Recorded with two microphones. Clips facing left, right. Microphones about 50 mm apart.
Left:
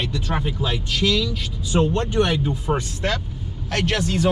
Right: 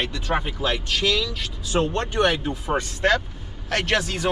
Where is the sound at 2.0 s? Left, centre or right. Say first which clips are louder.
Left 1 dB; right.